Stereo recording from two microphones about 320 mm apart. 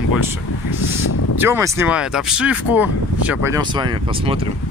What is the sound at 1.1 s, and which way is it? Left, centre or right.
Speech, left.